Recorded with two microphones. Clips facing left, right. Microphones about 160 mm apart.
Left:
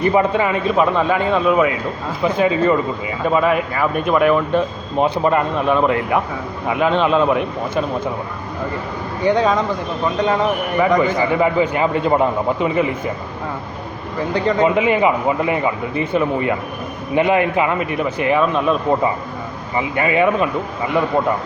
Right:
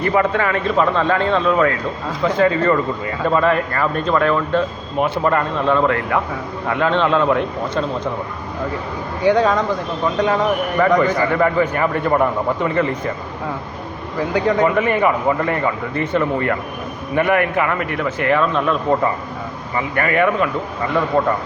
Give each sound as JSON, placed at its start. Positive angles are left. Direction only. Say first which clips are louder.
{"t": 0.0, "sound": "speech", "louder": "left 2 dB", "side_deg": 20}
{"t": 9.2, "sound": "speech", "louder": "right 1 dB", "side_deg": 0}
{"t": 10.8, "sound": "speech", "louder": "even", "side_deg": 10}
{"t": 14.6, "sound": "speech", "louder": "left 3 dB", "side_deg": 15}